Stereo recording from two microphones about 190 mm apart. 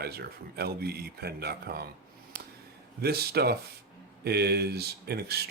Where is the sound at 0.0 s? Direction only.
55° right (ahead or behind).